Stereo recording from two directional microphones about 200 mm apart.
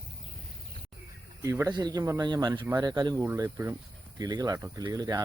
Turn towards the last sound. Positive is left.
turn(degrees=-20)  # may be behind; listen again after turning